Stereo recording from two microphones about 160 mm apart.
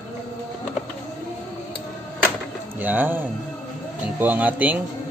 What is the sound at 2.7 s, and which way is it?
Music, 10° right (ahead or behind).